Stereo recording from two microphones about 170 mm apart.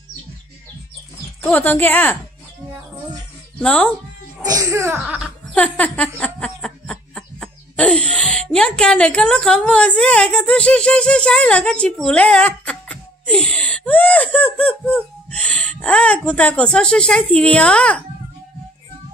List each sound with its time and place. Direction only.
1.4 s speech: 10° left (ahead or behind)
3.5 s speech: 5° left (ahead or behind)
4.5 s speech: 20° right (ahead or behind)
5.0 s speech: 5° right (ahead or behind)
5.5 s speech: 5° left (ahead or behind)